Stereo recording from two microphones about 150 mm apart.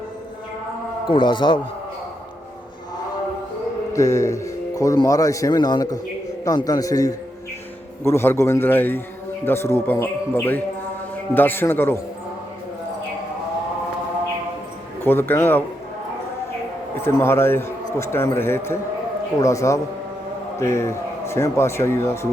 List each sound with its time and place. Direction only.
1.1 s a man's voice: 30° left (ahead or behind)
3.9 s a man's voice: 20° left (ahead or behind)
15.0 s a man's voice: 15° left (ahead or behind)
17.0 s a man's voice: 15° left (ahead or behind)